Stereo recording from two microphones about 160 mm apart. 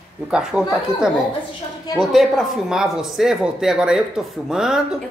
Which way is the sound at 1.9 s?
Centre (ahead or behind).